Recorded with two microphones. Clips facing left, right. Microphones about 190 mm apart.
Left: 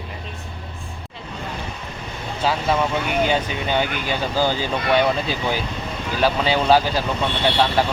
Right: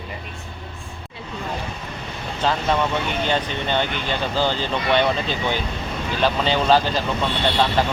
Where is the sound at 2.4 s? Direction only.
5° left (ahead or behind).